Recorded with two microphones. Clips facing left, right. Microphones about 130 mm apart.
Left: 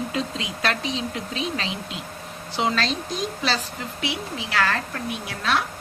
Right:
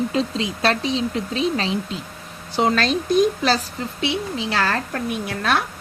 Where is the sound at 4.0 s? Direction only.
25° right (ahead or behind).